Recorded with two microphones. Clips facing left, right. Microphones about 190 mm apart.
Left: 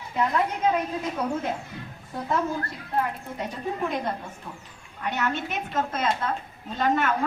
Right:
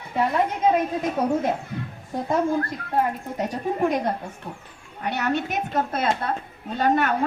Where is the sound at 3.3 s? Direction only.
45° right (ahead or behind).